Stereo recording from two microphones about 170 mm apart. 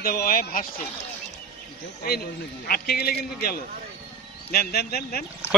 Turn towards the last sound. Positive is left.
turn(degrees=65)  # may be behind; listen again after turning